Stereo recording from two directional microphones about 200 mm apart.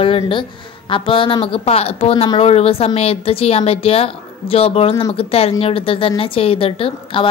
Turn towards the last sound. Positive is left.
turn(degrees=25)  # may be behind; listen again after turning